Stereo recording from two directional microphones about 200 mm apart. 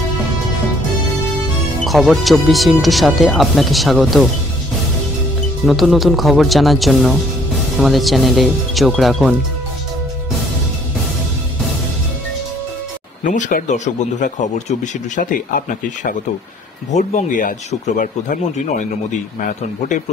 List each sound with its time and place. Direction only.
1.9 s speech: centre (ahead or behind)
5.7 s speech: centre (ahead or behind)
13.2 s speech: 40° left (ahead or behind)